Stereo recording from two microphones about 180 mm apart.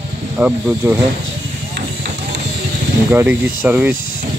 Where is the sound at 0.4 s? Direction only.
10° right (ahead or behind).